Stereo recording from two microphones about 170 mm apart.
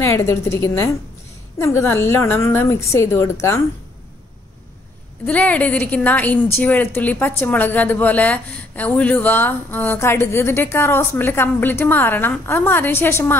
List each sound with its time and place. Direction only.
0.0 s a woman's voice: 15° left (ahead or behind)
5.2 s a woman's voice: 10° left (ahead or behind)